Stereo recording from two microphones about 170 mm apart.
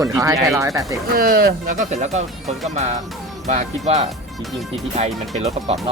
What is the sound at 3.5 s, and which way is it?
Speech, 45° right (ahead or behind).